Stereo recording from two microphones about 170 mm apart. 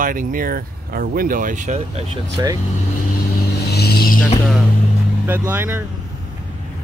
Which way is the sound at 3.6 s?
70° left (ahead or behind).